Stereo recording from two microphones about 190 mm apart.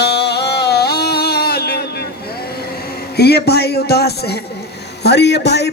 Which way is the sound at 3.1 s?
60° left (ahead or behind).